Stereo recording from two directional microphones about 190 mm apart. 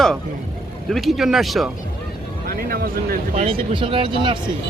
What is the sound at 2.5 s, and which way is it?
Speech, 50° right (ahead or behind).